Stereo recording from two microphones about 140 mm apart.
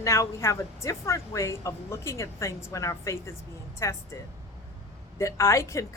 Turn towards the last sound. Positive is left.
turn(degrees=20)  # may be behind; listen again after turning